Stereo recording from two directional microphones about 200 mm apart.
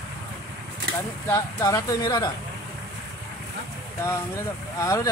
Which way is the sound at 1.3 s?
15° left (ahead or behind).